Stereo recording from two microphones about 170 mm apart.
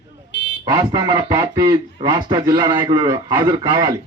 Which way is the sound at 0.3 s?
90° left.